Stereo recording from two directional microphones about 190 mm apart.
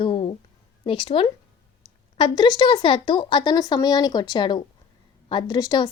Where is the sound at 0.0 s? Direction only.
30° left (ahead or behind).